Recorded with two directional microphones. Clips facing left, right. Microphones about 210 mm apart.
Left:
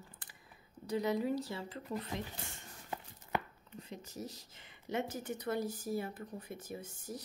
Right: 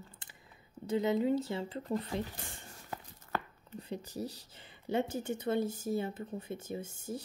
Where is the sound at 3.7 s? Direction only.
35° right (ahead or behind).